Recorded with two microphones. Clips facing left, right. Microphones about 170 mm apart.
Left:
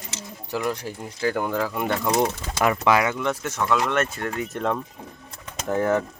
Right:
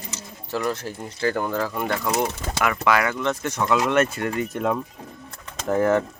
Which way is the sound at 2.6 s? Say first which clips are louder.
Left 1 dB; 25° left (ahead or behind).